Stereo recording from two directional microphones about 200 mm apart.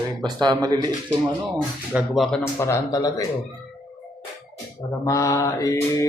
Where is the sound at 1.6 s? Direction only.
Centre (ahead or behind); by 3.3 s 15° left (ahead or behind).